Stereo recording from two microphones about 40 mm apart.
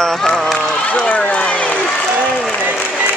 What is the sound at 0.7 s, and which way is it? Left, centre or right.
Run, left.